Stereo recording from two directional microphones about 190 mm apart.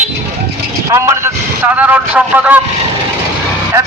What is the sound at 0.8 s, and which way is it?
A man's voice, 15° right (ahead or behind).